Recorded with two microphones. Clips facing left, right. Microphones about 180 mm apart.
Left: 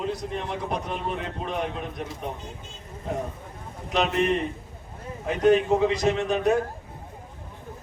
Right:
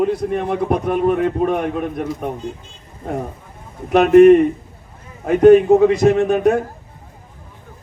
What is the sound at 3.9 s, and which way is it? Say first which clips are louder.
A man's voice: right 16 dB; 55° right (ahead or behind).